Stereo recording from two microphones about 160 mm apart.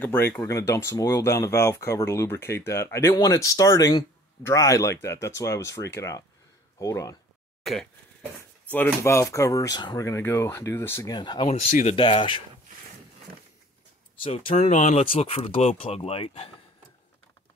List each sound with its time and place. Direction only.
0.0 s speech: 15° left (ahead or behind)
7.6 s speech: 5° left (ahead or behind); by 11.4 s 25° left (ahead or behind)
11.4 s speech: 45° left (ahead or behind)
12.0 s speech: 30° left (ahead or behind)
14.2 s speech: 35° left (ahead or behind)